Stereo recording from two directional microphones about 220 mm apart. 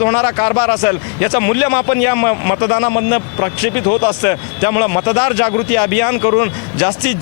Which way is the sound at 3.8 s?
35° left (ahead or behind).